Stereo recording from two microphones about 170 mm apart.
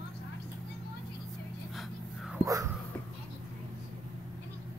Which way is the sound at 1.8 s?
5° right (ahead or behind).